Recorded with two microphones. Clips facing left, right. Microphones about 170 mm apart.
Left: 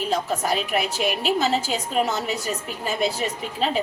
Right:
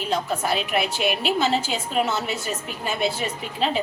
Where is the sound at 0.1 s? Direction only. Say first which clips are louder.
Right 1 dB; 40° left (ahead or behind).